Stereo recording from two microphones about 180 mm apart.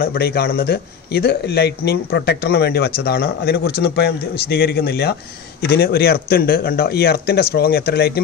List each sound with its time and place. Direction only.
0.0 s speech: 60° left (ahead or behind)